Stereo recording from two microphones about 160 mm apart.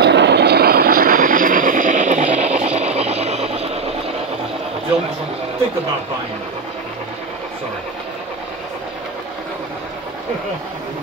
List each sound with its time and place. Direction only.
0.0 s vehicle: 90° right; by 3.9 s 40° right (ahead or behind)